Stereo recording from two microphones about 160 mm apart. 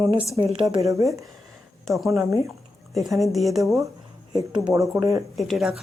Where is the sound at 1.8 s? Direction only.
Centre (ahead or behind).